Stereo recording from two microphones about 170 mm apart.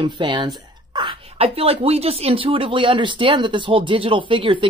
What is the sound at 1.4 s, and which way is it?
Speech, 35° right (ahead or behind).